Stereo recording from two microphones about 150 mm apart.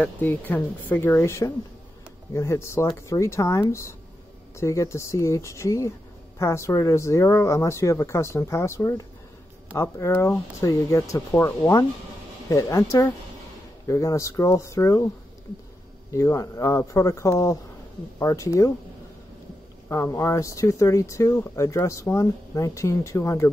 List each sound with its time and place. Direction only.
0.0 s speech: 10° left (ahead or behind)
16.1 s speech: 20° left (ahead or behind)
19.9 s speech: 20° left (ahead or behind)